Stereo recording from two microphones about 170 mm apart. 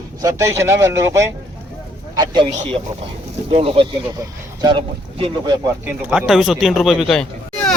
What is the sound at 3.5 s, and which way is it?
Speech, 35° right (ahead or behind).